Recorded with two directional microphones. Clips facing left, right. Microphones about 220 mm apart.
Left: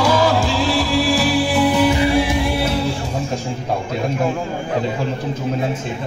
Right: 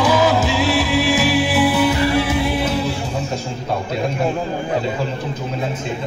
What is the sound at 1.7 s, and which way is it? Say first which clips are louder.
Music: left 1 dB; 15° left (ahead or behind).